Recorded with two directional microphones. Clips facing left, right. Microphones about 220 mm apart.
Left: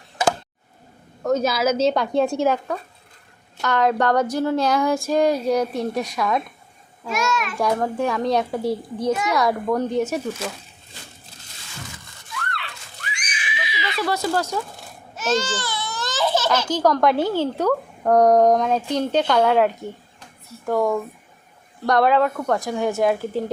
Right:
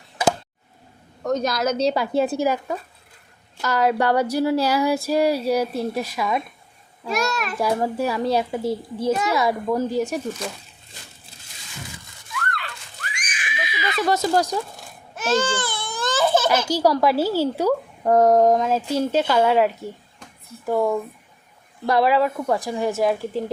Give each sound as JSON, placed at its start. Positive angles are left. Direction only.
{"t": 1.2, "sound": "a woman's voice", "side_deg": 5}
{"t": 7.1, "sound": "a child's voice", "side_deg": -35}
{"t": 7.6, "sound": "a woman's voice", "side_deg": -5}
{"t": 12.5, "sound": "a sound", "side_deg": -45}
{"t": 14.1, "sound": "speech", "side_deg": -15}
{"t": 15.1, "sound": "baby cry", "side_deg": -55}
{"t": 16.6, "sound": "a woman's voice", "side_deg": -10}